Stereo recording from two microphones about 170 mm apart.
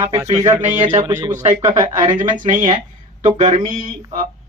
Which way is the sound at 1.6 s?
20° right (ahead or behind).